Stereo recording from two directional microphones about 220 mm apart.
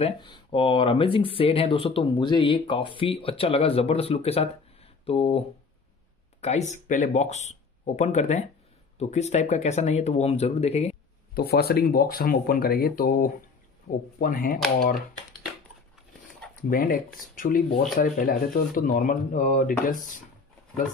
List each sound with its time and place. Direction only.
0.0 s speech: 20° left (ahead or behind)
6.4 s speech: 30° left (ahead or behind)
11.3 s speech: 45° left (ahead or behind)
16.6 s speech: 40° left (ahead or behind)